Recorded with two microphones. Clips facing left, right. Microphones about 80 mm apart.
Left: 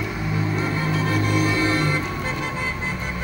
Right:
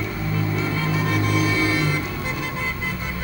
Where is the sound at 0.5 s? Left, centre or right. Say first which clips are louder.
Even; left.